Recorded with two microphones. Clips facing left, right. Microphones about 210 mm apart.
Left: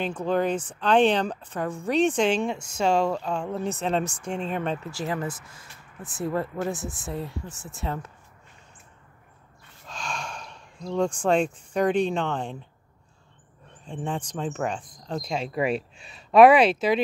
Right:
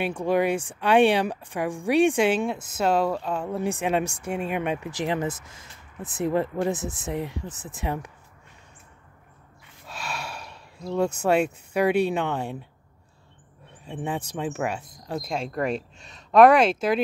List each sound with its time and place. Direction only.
0.0 s speech: 10° right (ahead or behind)
9.8 s speech: 5° right (ahead or behind)
13.8 s speech: 5° right (ahead or behind)